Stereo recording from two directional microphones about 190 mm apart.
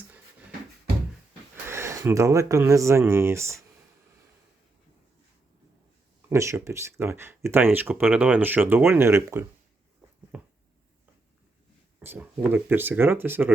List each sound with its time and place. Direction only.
1.6 s speech: 15° right (ahead or behind)
6.2 s speech: 15° right (ahead or behind)
10.3 s a sound: 5° right (ahead or behind)
11.9 s speech: 10° right (ahead or behind)